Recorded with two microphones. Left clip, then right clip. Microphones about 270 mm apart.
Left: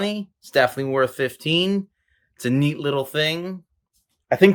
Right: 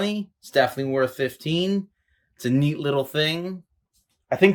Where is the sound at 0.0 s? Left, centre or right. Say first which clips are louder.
Left 1 dB; centre.